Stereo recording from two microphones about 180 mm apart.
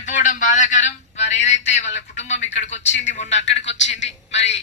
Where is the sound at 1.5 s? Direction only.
40° left (ahead or behind).